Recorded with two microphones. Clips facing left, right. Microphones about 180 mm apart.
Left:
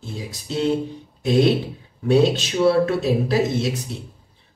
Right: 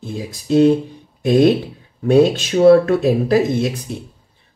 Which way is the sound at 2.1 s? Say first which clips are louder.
Right 4 dB; 50° right (ahead or behind).